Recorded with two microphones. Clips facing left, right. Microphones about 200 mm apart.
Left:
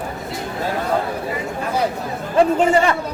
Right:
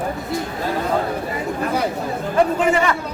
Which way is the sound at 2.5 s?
30° left (ahead or behind).